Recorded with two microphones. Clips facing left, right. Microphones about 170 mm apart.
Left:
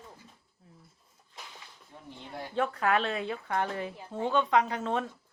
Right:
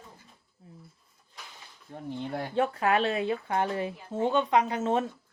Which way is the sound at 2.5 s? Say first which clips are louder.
Right 2 dB; 20° right (ahead or behind).